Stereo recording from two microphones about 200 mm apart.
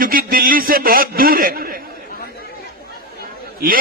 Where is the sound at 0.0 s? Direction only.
45° right (ahead or behind).